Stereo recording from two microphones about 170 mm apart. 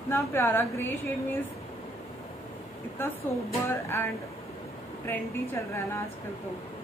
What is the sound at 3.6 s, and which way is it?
Speech, 15° left (ahead or behind).